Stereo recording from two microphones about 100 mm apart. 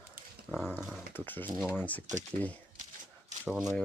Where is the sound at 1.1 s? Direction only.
20° left (ahead or behind).